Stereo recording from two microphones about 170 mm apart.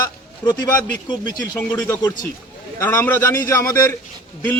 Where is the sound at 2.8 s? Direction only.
15° left (ahead or behind).